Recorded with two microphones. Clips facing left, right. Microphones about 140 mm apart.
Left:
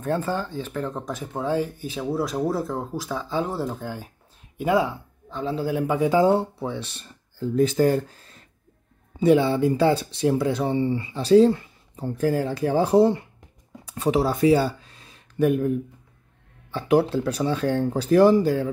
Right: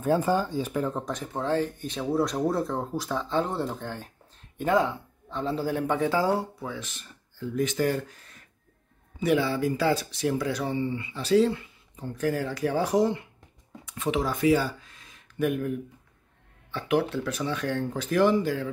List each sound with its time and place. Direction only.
0.0 s speech: 10° right (ahead or behind); by 15.7 s 30° left (ahead or behind)
16.7 s speech: 30° left (ahead or behind)